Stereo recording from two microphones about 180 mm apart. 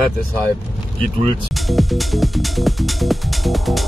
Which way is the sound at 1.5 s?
Centre (ahead or behind).